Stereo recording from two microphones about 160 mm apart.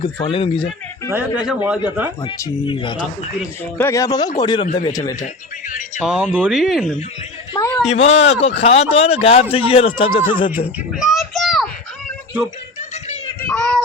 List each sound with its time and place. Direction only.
0.0 s speech: 35° left (ahead or behind)
1.1 s speech: 10° right (ahead or behind)
2.6 s speech: 30° left (ahead or behind)
3.8 s speech: 20° left (ahead or behind)
5.2 s speech: 55° left (ahead or behind)
6.0 s speech: 5° right (ahead or behind)
7.9 s speech: 40° left (ahead or behind)
10.9 s a sound: centre (ahead or behind)
13.4 s child singing: 10° left (ahead or behind)